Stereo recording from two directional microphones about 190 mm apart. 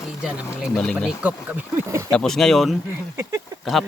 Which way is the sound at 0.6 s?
5° left (ahead or behind).